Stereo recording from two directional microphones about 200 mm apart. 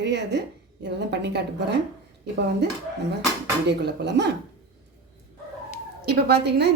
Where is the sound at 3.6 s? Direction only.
55° right (ahead or behind).